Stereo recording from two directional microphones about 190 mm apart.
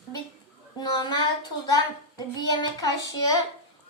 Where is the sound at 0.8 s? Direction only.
20° left (ahead or behind).